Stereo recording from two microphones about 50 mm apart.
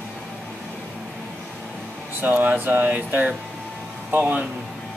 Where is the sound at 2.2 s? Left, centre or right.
Right.